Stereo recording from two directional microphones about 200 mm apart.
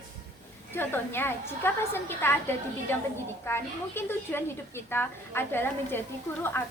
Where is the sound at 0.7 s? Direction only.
10° left (ahead or behind).